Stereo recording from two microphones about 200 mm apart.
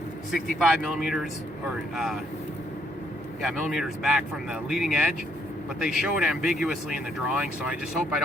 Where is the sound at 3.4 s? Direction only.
Centre (ahead or behind).